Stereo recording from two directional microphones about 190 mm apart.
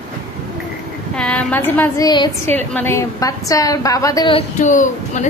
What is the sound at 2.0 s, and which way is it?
Speech, 25° left (ahead or behind).